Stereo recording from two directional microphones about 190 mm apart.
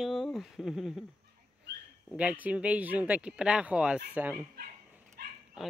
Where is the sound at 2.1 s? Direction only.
5° right (ahead or behind).